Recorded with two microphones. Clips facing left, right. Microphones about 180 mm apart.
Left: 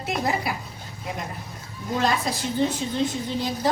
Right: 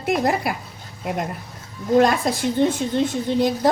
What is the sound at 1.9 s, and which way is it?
Speech, 50° right (ahead or behind).